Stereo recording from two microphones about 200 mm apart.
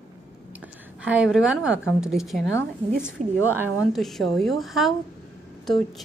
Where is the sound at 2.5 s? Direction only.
10° left (ahead or behind).